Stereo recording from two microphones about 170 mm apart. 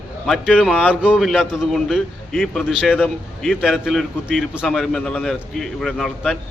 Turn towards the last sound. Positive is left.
turn(degrees=0)  # may be behind; listen again after turning